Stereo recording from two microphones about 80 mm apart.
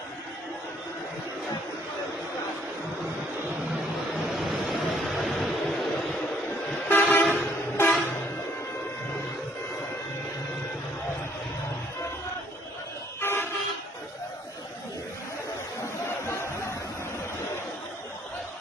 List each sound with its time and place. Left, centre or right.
4.4 s vehicle: centre
6.8 s vehicle: left
7.3 s train: left
13.2 s vehicle: left
16.0 s a sound: left